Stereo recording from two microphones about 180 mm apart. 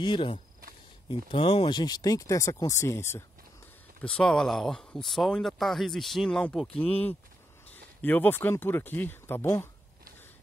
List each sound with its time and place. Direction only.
0.0 s speech: 30° left (ahead or behind)
4.0 s speech: 5° left (ahead or behind)